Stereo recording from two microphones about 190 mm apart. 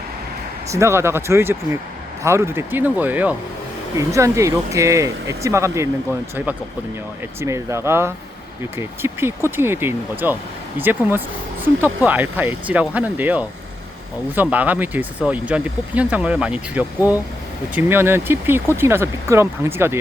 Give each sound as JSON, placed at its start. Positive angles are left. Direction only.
{"t": 0.7, "sound": "speech", "side_deg": -15}